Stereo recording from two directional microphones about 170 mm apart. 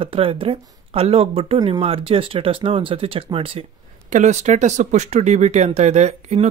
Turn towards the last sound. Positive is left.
turn(degrees=-40)  # may be behind; listen again after turning